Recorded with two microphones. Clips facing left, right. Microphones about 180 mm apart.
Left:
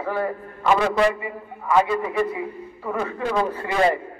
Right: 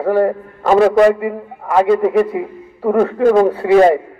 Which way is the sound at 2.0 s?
65° right (ahead or behind).